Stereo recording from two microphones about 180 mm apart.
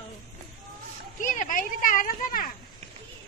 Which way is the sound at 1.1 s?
45° left (ahead or behind).